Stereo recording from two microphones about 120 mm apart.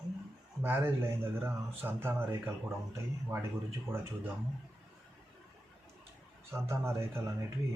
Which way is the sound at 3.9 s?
20° right (ahead or behind).